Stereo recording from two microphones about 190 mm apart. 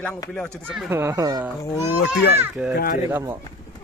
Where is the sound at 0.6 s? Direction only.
Centre (ahead or behind).